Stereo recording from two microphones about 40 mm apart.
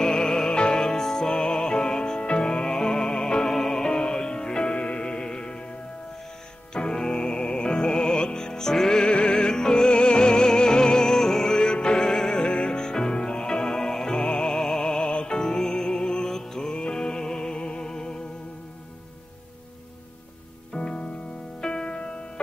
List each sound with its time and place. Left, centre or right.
0.0 s music: centre
6.7 s music: centre
20.7 s music: left